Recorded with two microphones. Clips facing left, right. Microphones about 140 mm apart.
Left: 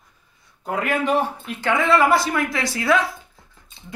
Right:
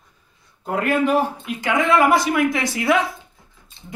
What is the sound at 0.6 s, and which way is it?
Speech, centre (ahead or behind).